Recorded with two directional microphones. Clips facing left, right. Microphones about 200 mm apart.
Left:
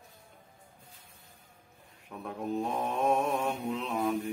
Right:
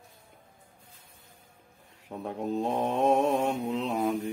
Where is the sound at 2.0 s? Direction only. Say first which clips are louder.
Right 3 dB; 30° right (ahead or behind).